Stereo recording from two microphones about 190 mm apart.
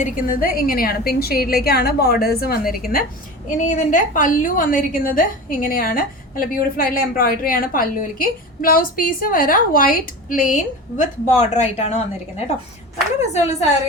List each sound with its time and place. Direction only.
0.0 s a woman's voice: 45° left (ahead or behind)
13.3 s speech: 35° left (ahead or behind)